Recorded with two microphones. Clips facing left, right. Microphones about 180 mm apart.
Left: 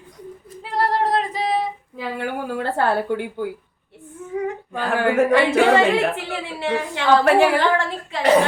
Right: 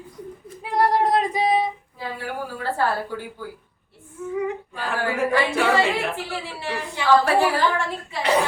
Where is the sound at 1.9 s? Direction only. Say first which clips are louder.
Left 4 dB; 75° left (ahead or behind).